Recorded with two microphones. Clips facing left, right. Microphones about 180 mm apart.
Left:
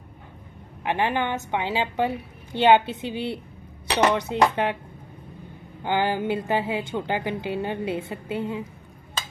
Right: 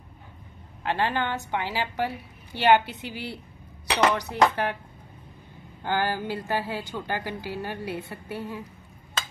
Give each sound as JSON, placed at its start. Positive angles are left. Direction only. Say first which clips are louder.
{"t": 0.8, "sound": "a woman's voice", "louder": "left 2 dB", "side_deg": 15}
{"t": 5.9, "sound": "a woman's voice", "louder": "left 4 dB", "side_deg": 20}